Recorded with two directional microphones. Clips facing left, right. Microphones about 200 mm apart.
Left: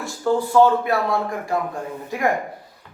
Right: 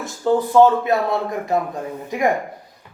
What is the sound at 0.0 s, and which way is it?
A man's voice, 20° right (ahead or behind).